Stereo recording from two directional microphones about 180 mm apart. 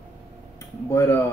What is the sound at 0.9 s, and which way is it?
Speech, 15° left (ahead or behind).